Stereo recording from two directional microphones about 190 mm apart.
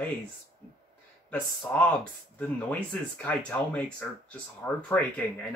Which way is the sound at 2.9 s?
5° left (ahead or behind).